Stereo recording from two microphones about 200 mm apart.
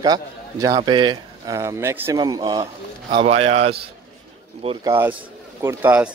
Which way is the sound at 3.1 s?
30° right (ahead or behind).